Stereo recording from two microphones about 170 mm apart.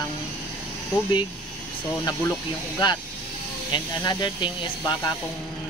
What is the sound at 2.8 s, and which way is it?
Speech, 25° left (ahead or behind).